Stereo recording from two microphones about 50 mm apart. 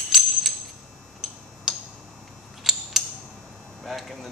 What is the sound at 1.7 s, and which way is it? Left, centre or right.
Tick-tock, centre.